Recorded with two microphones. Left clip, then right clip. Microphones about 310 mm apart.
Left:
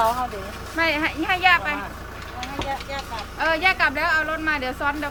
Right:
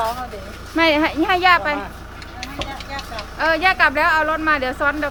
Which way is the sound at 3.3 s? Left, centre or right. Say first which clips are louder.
Right 4 dB; centre.